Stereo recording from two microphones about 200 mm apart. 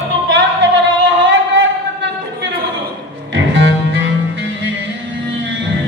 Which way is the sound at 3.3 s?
65° right (ahead or behind).